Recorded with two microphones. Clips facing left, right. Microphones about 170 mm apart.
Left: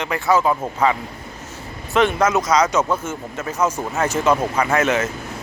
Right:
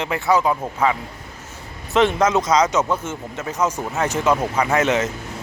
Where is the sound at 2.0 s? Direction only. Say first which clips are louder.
Even; 25° right (ahead or behind).